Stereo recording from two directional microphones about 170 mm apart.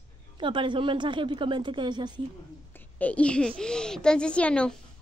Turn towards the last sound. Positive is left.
turn(degrees=5)  # may be behind; listen again after turning